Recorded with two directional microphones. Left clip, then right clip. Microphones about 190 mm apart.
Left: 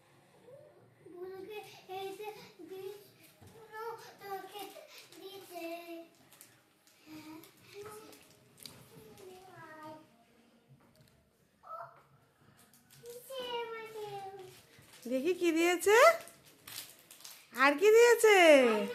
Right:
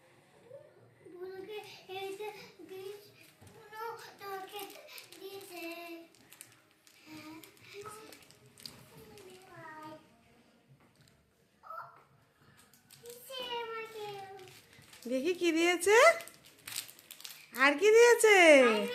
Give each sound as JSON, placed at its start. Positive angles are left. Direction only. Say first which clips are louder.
{"t": 15.1, "sound": "a woman's voice", "louder": "even", "side_deg": 0}
{"t": 17.5, "sound": "a woman's voice", "louder": "even", "side_deg": 0}